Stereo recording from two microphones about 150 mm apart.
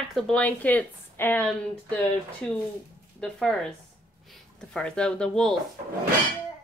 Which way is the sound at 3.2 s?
5° left (ahead or behind).